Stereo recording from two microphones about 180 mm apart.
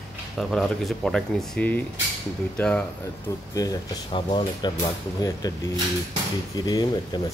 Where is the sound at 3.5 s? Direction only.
25° left (ahead or behind).